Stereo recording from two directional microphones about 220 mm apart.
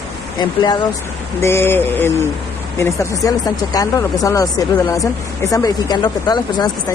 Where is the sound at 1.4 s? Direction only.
10° left (ahead or behind).